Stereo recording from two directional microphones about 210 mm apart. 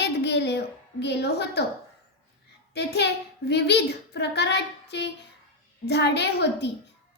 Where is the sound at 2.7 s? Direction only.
50° left (ahead or behind).